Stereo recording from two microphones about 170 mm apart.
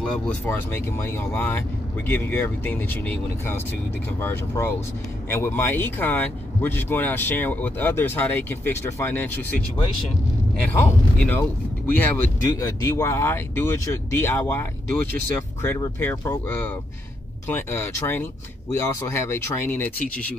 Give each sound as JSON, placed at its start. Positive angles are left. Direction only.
{"t": 0.0, "sound": "speech", "side_deg": 10}
{"t": 10.7, "sound": "speech", "side_deg": 10}